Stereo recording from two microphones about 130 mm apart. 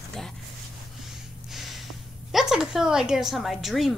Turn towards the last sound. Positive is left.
turn(degrees=0)  # may be behind; listen again after turning